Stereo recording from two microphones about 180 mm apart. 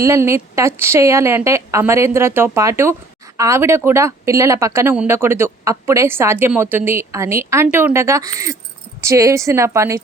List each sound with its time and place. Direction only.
0.0 s speech: 15° right (ahead or behind)